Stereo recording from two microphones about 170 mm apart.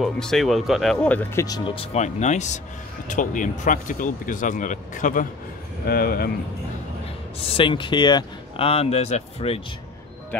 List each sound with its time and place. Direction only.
0.0 s speech: centre (ahead or behind)
0.9 s speech: 10° left (ahead or behind)
1.8 s speech: 40° left (ahead or behind)
5.9 s speech: 60° left (ahead or behind)
7.5 s speech: 30° left (ahead or behind)